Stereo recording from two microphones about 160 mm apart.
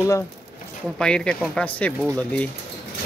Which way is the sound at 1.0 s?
5° left (ahead or behind).